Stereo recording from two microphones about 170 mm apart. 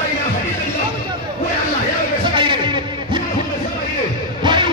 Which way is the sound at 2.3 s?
30° right (ahead or behind).